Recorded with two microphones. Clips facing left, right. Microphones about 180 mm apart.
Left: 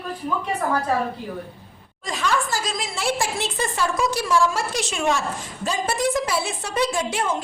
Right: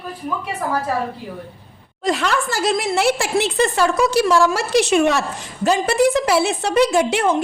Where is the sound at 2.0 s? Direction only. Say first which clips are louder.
Right 5 dB; 70° right (ahead or behind).